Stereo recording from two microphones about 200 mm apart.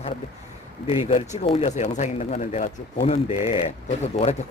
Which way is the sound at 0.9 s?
30° left (ahead or behind).